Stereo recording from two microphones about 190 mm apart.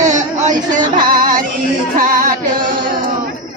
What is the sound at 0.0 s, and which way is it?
Music, 40° right (ahead or behind).